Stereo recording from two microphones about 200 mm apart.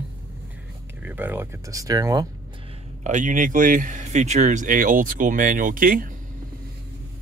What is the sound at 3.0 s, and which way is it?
Speech, 40° right (ahead or behind).